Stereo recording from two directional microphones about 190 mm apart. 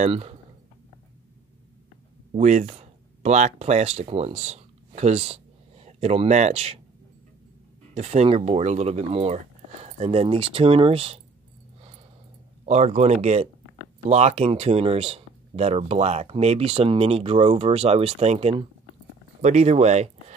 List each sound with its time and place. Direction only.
0.0 s speech: 35° right (ahead or behind)
2.3 s speech: 40° right (ahead or behind)
7.9 s speech: 35° right (ahead or behind)
12.6 s speech: 35° right (ahead or behind)